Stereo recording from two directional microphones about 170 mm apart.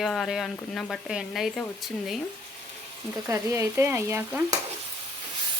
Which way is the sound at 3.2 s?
15° right (ahead or behind).